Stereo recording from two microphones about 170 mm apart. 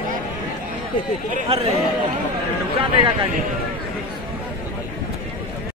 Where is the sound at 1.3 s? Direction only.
35° right (ahead or behind).